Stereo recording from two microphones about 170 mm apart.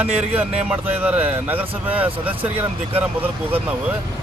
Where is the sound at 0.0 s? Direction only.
10° right (ahead or behind).